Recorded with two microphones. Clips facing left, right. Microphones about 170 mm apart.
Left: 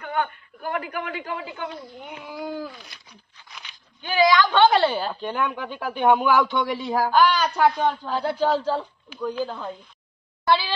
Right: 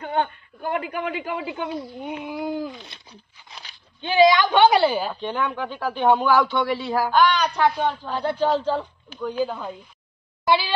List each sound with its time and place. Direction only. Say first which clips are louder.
0.0 s a man's voice: right 2 dB; 25° right (ahead or behind); by 5.1 s 5° right (ahead or behind)
5.2 s a man's voice: right 1 dB; 10° left (ahead or behind)
7.1 s a woman's voice: even; 5° left (ahead or behind)
9.4 s speech: right 3 dB; 10° right (ahead or behind)